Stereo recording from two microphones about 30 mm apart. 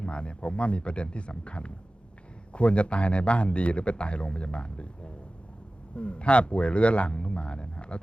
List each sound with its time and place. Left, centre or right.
0.0 s a man's voice: left